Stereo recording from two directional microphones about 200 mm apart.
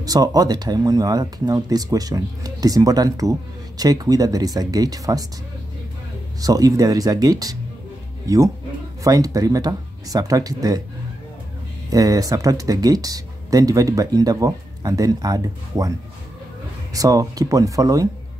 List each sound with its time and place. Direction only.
0.0 s speech: 20° right (ahead or behind)
6.4 s speech: 20° right (ahead or behind)
11.9 s speech: 20° right (ahead or behind)
16.9 s speech: 15° right (ahead or behind)